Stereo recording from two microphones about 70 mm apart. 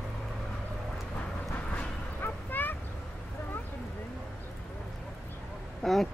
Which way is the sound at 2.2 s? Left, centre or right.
Left.